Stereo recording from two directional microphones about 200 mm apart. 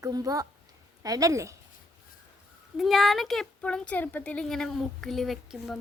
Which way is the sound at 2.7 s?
Centre (ahead or behind).